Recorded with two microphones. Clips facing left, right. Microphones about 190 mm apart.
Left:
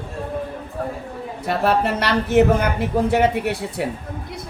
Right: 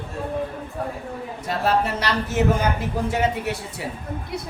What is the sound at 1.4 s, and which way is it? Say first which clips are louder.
Speech: left 3 dB; 60° left (ahead or behind).